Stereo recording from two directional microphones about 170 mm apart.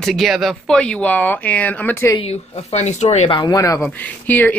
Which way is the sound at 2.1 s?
40° left (ahead or behind).